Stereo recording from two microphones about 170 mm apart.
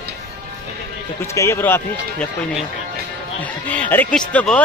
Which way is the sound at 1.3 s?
15° left (ahead or behind).